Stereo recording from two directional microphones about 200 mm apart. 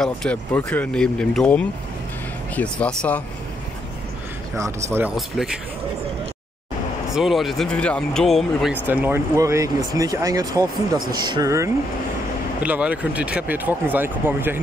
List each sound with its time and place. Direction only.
0.0 s speech: 5° left (ahead or behind)
4.6 s speech: 15° right (ahead or behind)
5.1 s speech: centre (ahead or behind)
7.2 s speech: centre (ahead or behind)
8.8 s speech: 10° right (ahead or behind)